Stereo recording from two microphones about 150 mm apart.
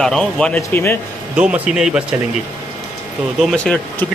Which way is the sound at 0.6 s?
15° left (ahead or behind).